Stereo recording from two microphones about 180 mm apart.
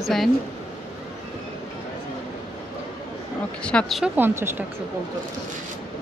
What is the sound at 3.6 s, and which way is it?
Speech, 5° left (ahead or behind).